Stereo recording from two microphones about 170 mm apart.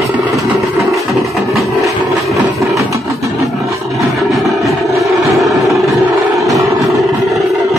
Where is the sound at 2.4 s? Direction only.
20° right (ahead or behind).